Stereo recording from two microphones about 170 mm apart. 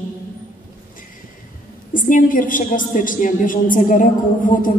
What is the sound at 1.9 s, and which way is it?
A woman's voice, 50° left (ahead or behind).